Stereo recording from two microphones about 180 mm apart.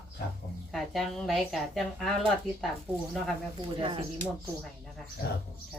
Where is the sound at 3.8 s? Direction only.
30° right (ahead or behind).